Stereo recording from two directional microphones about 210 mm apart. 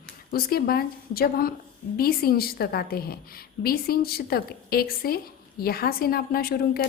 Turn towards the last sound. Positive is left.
turn(degrees=45)  # may be behind; listen again after turning